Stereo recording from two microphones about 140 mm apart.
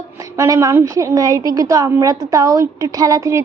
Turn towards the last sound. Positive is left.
turn(degrees=-20)  # may be behind; listen again after turning